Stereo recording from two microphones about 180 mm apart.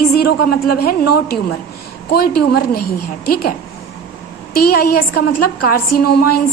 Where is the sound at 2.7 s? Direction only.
55° left (ahead or behind).